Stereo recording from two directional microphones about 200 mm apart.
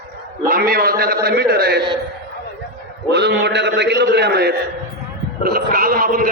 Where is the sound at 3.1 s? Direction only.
60° right (ahead or behind).